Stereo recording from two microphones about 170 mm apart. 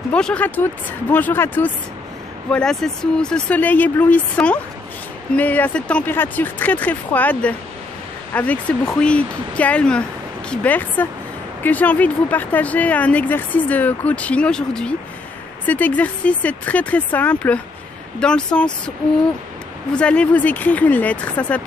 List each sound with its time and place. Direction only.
0.1 s speech: 5° left (ahead or behind)
19.9 s speech: 5° left (ahead or behind)